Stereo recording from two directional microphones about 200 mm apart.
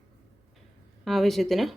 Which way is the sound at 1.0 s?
Centre (ahead or behind).